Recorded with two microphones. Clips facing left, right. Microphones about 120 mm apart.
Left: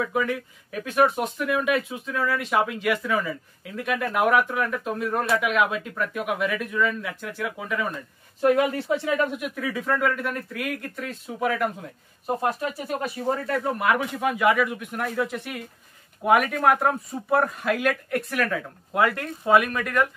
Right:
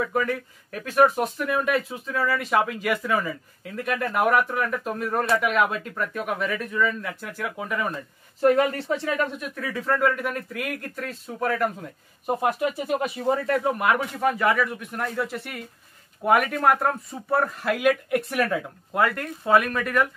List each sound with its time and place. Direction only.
0.0 s speech: 5° left (ahead or behind)
12.3 s speech: 5° right (ahead or behind)
18.3 s speech: 20° right (ahead or behind)
18.9 s speech: 5° left (ahead or behind)